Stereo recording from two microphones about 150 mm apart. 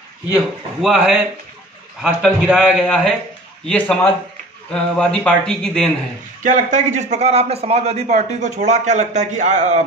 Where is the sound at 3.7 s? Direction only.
10° left (ahead or behind).